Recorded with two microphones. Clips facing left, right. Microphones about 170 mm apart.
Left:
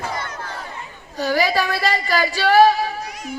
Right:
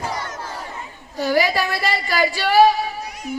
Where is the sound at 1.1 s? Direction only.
15° right (ahead or behind).